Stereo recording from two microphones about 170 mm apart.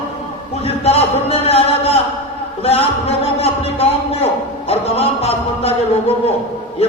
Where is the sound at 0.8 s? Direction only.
35° left (ahead or behind).